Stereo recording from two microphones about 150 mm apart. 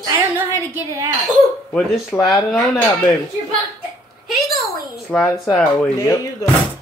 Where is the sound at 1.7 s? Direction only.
10° left (ahead or behind).